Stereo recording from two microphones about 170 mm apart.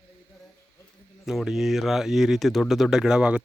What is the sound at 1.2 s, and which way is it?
Speech, 5° right (ahead or behind).